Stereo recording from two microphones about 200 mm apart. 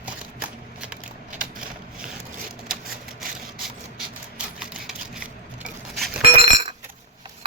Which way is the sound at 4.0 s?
5° right (ahead or behind).